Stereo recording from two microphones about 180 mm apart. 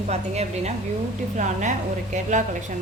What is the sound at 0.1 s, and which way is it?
Speech, 35° right (ahead or behind).